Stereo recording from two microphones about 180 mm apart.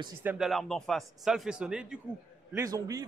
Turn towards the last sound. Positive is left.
turn(degrees=-20)  # may be behind; listen again after turning